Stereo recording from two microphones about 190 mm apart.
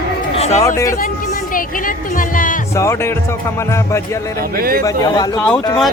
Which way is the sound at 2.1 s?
45° left (ahead or behind).